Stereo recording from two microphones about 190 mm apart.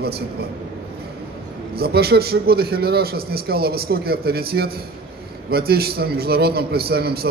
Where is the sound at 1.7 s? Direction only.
55° right (ahead or behind).